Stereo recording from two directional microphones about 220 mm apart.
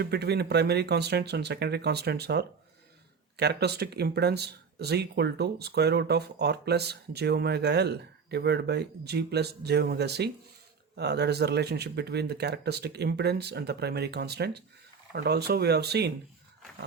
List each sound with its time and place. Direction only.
0.0 s speech: 50° right (ahead or behind)